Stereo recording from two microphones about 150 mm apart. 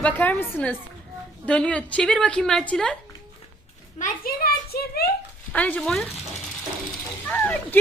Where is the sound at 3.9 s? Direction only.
70° left (ahead or behind); by 5.0 s 90° left.